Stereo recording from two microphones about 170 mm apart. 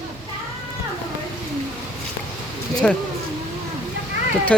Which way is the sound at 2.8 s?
5° left (ahead or behind).